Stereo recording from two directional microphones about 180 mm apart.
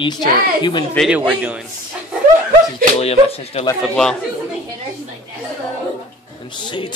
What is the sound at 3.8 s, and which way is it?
Speech, 5° left (ahead or behind).